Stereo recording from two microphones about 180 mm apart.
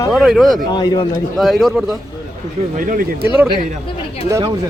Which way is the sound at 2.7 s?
50° right (ahead or behind).